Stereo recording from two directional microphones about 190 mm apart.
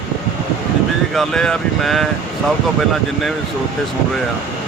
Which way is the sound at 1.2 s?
Centre (ahead or behind).